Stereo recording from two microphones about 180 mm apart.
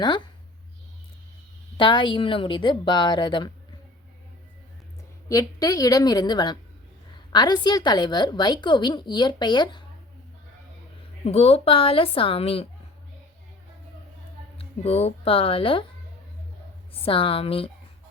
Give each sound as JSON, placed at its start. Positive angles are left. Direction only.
{"t": 0.0, "sound": "a woman's voice", "side_deg": 25}
{"t": 1.8, "sound": "a woman's voice", "side_deg": 25}
{"t": 5.3, "sound": "a woman's voice", "side_deg": 20}
{"t": 11.3, "sound": "a woman's voice", "side_deg": 35}
{"t": 14.6, "sound": "speech", "side_deg": 35}
{"t": 16.9, "sound": "a woman's voice", "side_deg": 30}